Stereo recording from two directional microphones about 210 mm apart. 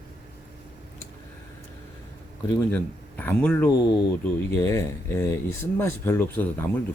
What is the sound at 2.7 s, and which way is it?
Speech, 10° left (ahead or behind).